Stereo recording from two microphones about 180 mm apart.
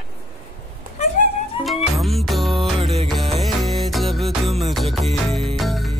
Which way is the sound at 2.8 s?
35° right (ahead or behind).